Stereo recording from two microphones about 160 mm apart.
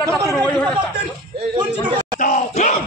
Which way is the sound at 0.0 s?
20° right (ahead or behind).